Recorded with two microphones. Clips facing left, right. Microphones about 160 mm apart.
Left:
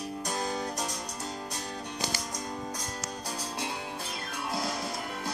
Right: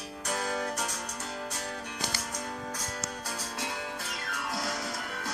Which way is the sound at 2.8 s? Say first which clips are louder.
Even; 35° left (ahead or behind).